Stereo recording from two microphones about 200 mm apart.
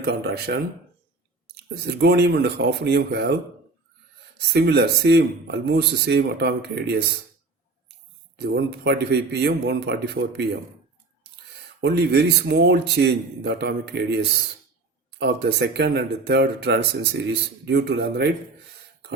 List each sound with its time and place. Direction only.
0.0 s speech: 55° right (ahead or behind)
4.4 s speech: 55° right (ahead or behind)
8.4 s speech: 55° right (ahead or behind)
11.8 s speech: 55° right (ahead or behind)
15.2 s speech: 55° right (ahead or behind)